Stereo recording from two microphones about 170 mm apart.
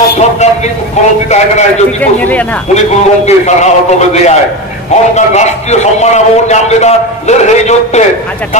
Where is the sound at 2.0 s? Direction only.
10° left (ahead or behind).